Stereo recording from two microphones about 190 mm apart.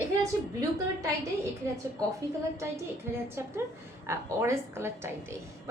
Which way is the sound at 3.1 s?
10° right (ahead or behind).